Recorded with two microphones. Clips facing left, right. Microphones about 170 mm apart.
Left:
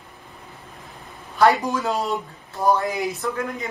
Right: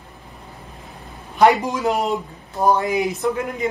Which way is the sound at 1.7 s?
20° right (ahead or behind).